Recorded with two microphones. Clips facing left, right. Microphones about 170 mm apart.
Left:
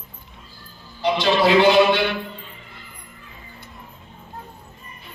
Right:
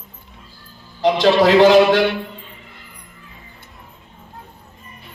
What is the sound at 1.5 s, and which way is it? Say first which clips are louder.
Speech: right 3 dB; 45° right (ahead or behind).